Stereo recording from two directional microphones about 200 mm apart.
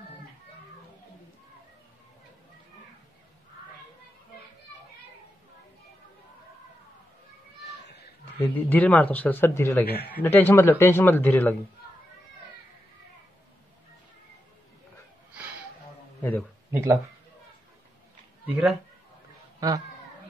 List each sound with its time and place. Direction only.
8.4 s speech: 10° left (ahead or behind)
9.8 s speech: 50° left (ahead or behind)
10.2 s speech: 10° left (ahead or behind)
16.2 s a sound: 10° left (ahead or behind)
16.7 s speech: 15° right (ahead or behind)
19.6 s speech: 20° right (ahead or behind)